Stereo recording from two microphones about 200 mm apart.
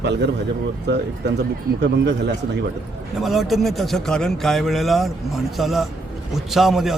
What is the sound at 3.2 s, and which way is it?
Speech, centre (ahead or behind).